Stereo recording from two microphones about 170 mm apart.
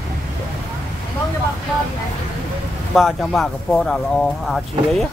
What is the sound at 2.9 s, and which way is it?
Speech, centre (ahead or behind).